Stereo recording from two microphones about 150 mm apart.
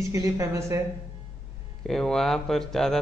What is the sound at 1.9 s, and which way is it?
A man's voice, centre (ahead or behind).